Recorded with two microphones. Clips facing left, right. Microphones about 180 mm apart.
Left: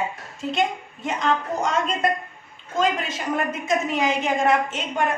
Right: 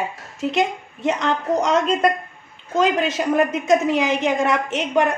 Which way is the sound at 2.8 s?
80° right.